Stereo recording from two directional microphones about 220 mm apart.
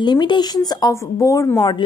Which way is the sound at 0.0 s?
20° left (ahead or behind).